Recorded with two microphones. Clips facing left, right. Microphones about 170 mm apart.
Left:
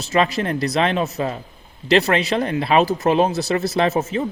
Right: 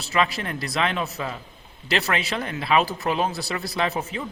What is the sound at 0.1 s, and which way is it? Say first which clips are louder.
Speech: left 5 dB; 35° left (ahead or behind).